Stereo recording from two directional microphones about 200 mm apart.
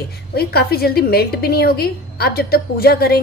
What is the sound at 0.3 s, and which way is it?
A woman's voice, 50° left (ahead or behind).